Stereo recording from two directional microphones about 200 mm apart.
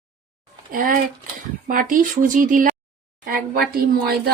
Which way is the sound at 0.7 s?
45° right (ahead or behind).